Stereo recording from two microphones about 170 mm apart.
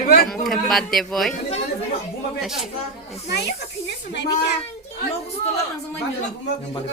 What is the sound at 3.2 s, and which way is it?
Speech, 80° left.